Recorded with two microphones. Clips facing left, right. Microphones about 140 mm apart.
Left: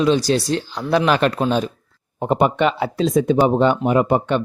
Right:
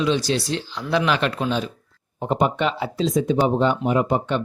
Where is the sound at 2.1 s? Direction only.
60° left (ahead or behind).